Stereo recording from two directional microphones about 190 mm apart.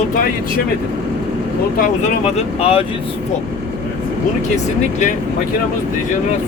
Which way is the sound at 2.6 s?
30° left (ahead or behind).